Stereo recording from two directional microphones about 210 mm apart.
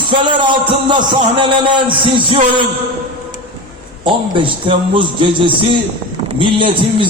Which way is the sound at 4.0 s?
25° right (ahead or behind).